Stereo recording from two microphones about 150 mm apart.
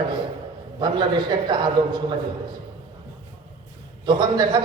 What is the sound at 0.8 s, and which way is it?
A man's voice, 30° right (ahead or behind).